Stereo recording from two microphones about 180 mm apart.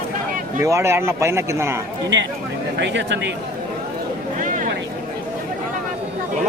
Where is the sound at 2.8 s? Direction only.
90° right.